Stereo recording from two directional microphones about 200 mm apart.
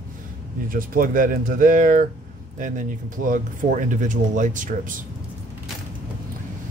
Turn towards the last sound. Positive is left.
turn(degrees=-40)  # may be behind; listen again after turning